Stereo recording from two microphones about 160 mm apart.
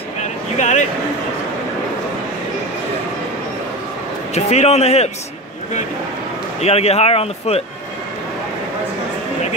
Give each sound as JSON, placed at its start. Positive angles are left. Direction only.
{"t": 0.2, "sound": "a sound", "side_deg": 45}
{"t": 4.3, "sound": "a man's voice", "side_deg": 40}
{"t": 6.6, "sound": "speech", "side_deg": 40}